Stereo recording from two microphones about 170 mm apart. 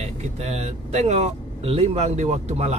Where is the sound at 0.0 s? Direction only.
40° right (ahead or behind).